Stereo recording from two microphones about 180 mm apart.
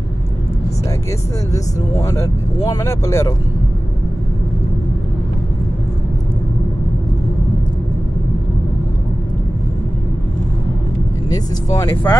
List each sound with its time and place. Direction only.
1.5 s speech: 15° left (ahead or behind)
11.3 s speech: 20° left (ahead or behind)